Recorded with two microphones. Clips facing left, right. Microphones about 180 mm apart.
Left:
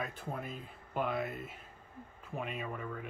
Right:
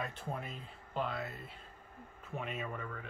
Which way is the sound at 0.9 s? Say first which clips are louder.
Left 3 dB; 20° left (ahead or behind).